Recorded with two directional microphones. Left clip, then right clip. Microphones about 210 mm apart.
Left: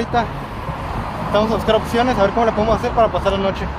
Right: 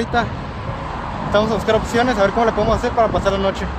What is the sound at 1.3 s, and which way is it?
Speech, centre (ahead or behind).